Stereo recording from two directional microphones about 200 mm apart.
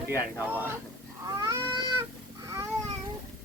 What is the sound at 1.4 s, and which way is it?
Cat, 15° right (ahead or behind).